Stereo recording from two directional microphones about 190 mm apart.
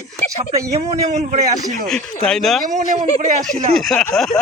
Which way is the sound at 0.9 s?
35° right (ahead or behind).